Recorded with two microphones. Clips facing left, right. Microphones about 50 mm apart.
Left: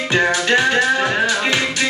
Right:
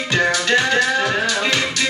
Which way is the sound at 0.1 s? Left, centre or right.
Left.